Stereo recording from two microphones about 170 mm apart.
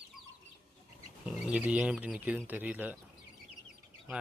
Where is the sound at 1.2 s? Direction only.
5° right (ahead or behind).